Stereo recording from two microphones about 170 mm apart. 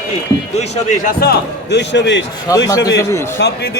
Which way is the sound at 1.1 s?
80° left.